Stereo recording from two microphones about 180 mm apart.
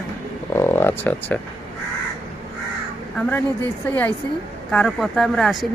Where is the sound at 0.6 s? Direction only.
15° left (ahead or behind).